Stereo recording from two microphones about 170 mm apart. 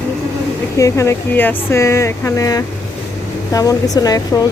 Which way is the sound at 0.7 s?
20° left (ahead or behind).